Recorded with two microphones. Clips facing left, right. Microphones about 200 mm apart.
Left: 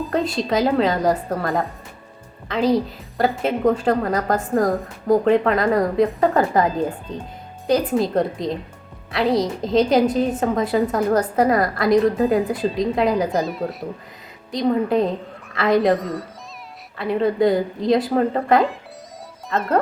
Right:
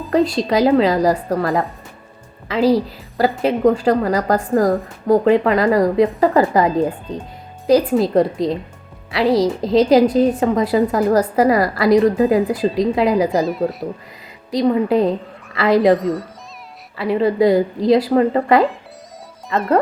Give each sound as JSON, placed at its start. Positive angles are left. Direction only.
{"t": 0.0, "sound": "a woman's voice", "side_deg": 0}